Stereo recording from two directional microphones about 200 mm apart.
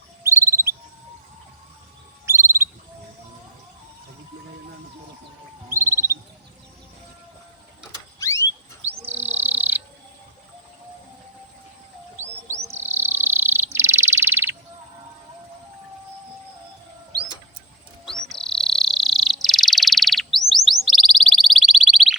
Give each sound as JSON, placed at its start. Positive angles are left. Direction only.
{"t": 0.2, "sound": "bird", "side_deg": -15}
{"t": 2.2, "sound": "a sound", "side_deg": -10}
{"t": 5.6, "sound": "a sound", "side_deg": -10}
{"t": 8.2, "sound": "rodents", "side_deg": 15}
{"t": 9.2, "sound": "bird", "side_deg": -10}
{"t": 12.5, "sound": "bird", "side_deg": -10}
{"t": 18.3, "sound": "bird", "side_deg": 5}
{"t": 20.7, "sound": "chirp", "side_deg": 0}